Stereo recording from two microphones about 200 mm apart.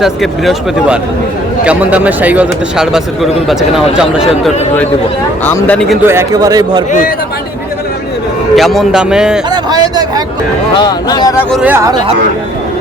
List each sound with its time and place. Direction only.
0.0 s speech: centre (ahead or behind)
5.5 s speech: 10° left (ahead or behind)
6.1 s a man's voice: 15° right (ahead or behind)
8.5 s speech: centre (ahead or behind)
9.5 s a sound: 20° right (ahead or behind)
10.8 s speech: 20° left (ahead or behind)
11.5 s speech: 10° right (ahead or behind)